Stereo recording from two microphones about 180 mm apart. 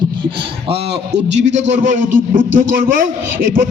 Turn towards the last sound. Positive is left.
turn(degrees=-50)  # may be behind; listen again after turning